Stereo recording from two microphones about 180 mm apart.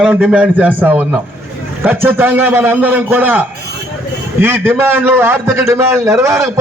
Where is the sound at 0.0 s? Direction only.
5° right (ahead or behind).